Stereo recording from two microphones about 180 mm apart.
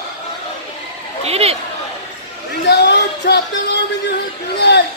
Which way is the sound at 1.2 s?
35° right (ahead or behind).